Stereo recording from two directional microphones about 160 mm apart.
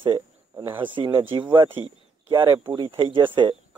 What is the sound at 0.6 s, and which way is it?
Speech, 15° right (ahead or behind).